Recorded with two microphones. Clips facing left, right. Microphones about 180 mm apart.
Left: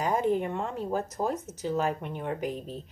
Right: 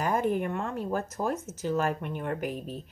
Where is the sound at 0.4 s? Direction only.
20° left (ahead or behind).